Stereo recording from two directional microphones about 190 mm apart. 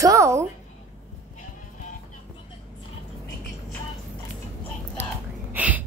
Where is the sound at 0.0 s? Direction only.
15° right (ahead or behind).